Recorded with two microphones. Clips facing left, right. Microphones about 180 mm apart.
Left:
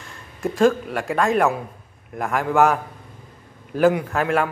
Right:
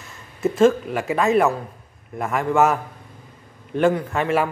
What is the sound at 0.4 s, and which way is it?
A man's voice, centre (ahead or behind).